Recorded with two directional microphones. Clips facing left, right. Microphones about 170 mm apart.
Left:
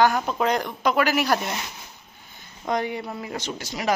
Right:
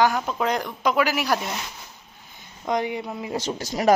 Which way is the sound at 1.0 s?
5° right (ahead or behind).